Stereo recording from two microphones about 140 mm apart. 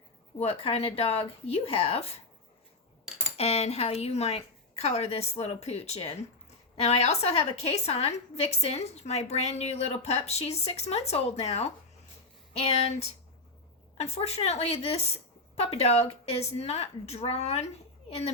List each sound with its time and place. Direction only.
0.3 s a woman's voice: 45° left (ahead or behind)
3.3 s a woman's voice: 45° left (ahead or behind)